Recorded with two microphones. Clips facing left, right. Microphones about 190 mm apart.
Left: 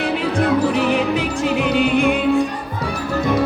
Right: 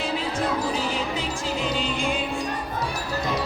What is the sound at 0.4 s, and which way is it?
Music, 65° left (ahead or behind).